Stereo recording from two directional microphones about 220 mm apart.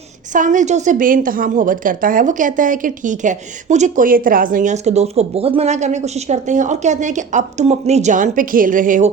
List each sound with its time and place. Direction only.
0.3 s a woman's voice: 35° right (ahead or behind)